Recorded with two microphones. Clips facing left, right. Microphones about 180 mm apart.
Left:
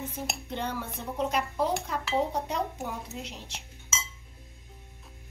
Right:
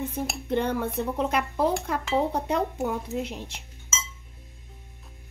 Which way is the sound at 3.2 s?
55° right (ahead or behind).